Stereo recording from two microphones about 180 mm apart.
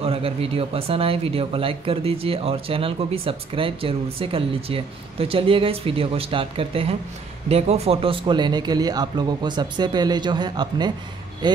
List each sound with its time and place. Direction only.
0.0 s speech: 30° right (ahead or behind)